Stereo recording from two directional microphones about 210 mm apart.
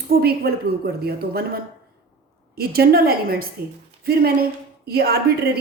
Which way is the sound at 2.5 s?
45° right (ahead or behind).